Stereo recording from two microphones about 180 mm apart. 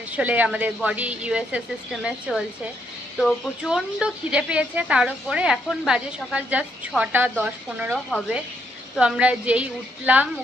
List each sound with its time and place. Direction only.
0.1 s a woman's voice: 10° right (ahead or behind)